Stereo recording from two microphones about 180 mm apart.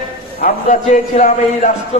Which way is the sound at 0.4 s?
45° left (ahead or behind).